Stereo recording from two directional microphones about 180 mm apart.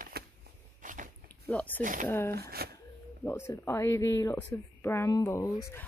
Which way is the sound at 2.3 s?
60° right (ahead or behind).